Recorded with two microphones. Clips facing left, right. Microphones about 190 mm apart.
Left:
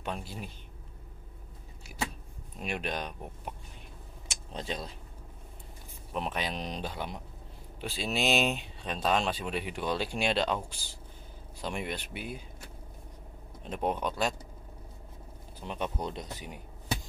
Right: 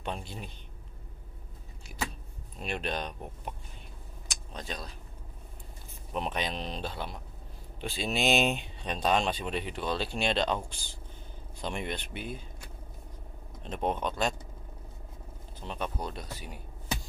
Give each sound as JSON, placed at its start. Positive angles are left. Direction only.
{"t": 0.0, "sound": "speech", "side_deg": 5}
{"t": 2.6, "sound": "speech", "side_deg": 10}
{"t": 4.3, "sound": "a sound", "side_deg": 25}
{"t": 6.1, "sound": "speech", "side_deg": 5}
{"t": 13.6, "sound": "speech", "side_deg": 10}
{"t": 15.6, "sound": "speech", "side_deg": 15}